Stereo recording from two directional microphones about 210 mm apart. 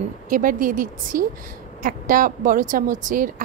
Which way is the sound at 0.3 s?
40° right (ahead or behind).